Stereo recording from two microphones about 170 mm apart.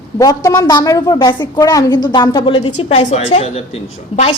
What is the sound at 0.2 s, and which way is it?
A woman's voice, 20° left (ahead or behind).